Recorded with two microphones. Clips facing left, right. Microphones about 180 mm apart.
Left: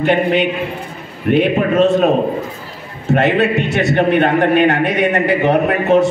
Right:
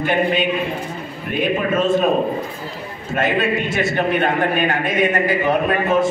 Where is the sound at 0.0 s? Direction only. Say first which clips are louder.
Left 4 dB; 65° left (ahead or behind).